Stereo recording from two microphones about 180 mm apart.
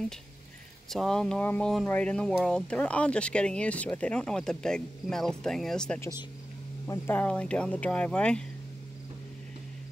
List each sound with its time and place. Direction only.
0.8 s speech: centre (ahead or behind)
5.9 s speech: 20° left (ahead or behind)